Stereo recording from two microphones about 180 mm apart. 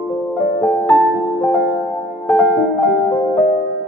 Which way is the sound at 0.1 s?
5° left (ahead or behind).